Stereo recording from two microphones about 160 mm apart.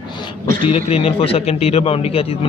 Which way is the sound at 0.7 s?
40° left (ahead or behind).